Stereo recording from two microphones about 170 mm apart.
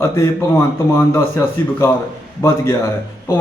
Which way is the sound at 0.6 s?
15° left (ahead or behind).